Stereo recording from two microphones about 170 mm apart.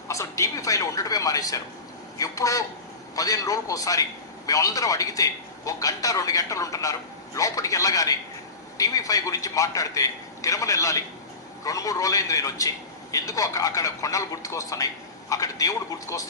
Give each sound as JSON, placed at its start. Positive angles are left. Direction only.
{"t": 0.1, "sound": "a woman's voice", "side_deg": 20}